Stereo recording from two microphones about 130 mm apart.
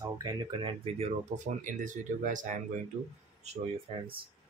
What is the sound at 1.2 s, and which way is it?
Speech, 75° right (ahead or behind).